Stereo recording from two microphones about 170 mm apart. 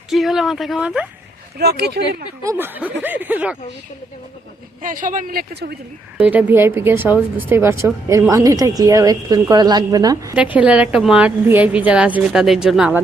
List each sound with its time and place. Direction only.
0.1 s speech: centre (ahead or behind)
1.5 s speech: 70° right (ahead or behind)
2.4 s speech: 15° right (ahead or behind)
4.8 s speech: 50° right (ahead or behind)
6.1 s speech: 10° right (ahead or behind)
10.3 s a woman's voice: 5° right (ahead or behind)